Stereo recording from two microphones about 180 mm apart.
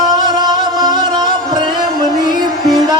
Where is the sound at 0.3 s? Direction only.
25° right (ahead or behind).